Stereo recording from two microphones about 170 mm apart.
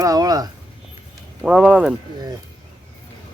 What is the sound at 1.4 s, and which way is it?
Speech, 5° right (ahead or behind).